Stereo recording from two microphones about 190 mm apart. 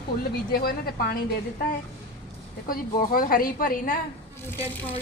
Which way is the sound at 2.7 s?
50° left (ahead or behind).